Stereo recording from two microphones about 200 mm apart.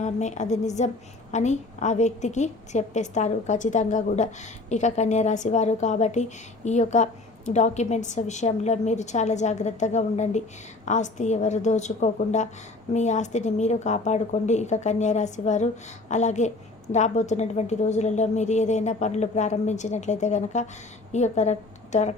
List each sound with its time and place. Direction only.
0.0 s a woman's voice: 35° left (ahead or behind)